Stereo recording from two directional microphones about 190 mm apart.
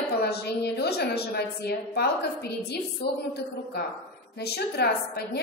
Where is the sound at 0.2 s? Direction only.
55° left (ahead or behind).